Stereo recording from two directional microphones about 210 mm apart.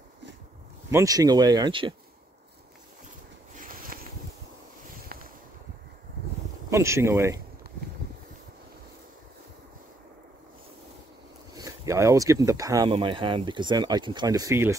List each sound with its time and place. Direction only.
0.8 s speech: 15° right (ahead or behind)
3.5 s a sound: 40° right (ahead or behind)
6.7 s speech: 15° right (ahead or behind)
11.5 s speech: 15° right (ahead or behind)